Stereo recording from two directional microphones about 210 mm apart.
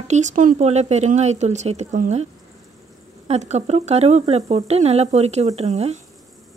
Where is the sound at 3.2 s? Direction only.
30° right (ahead or behind).